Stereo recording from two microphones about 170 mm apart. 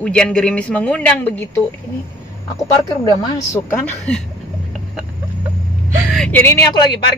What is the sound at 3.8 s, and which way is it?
Speech, 5° left (ahead or behind).